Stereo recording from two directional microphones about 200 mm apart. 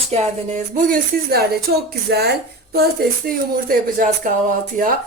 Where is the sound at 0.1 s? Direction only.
30° right (ahead or behind).